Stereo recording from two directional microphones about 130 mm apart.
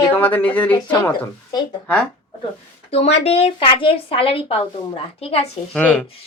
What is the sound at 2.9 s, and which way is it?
Speech, 50° left (ahead or behind).